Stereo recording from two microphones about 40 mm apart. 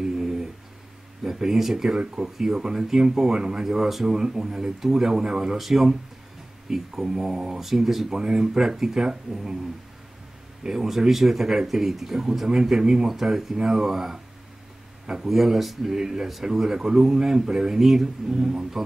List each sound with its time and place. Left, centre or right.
0.0 s dog: centre
1.2 s speech: centre
5.6 s speech: centre
7.6 s speech: centre
10.6 s speech: centre
15.2 s speech: centre
18.3 s speech: centre